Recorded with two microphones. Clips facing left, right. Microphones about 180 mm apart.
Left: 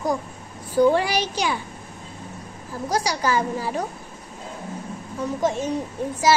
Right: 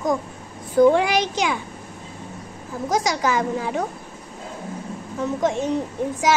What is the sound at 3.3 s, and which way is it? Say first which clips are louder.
Speech: right 1 dB; 15° right (ahead or behind).